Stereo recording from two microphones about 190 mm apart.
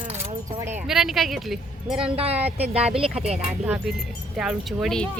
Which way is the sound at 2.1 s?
30° right (ahead or behind).